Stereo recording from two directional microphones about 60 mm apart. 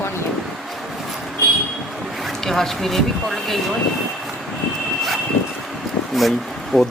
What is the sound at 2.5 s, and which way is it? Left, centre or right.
Speech, centre.